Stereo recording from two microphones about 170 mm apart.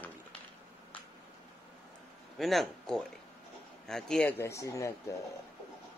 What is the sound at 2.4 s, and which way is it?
Speech, centre (ahead or behind).